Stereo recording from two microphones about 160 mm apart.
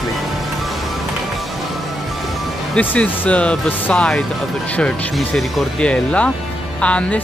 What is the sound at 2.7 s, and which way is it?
Speech, 10° left (ahead or behind).